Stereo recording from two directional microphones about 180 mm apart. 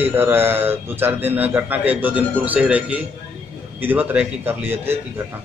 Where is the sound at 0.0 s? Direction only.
10° right (ahead or behind).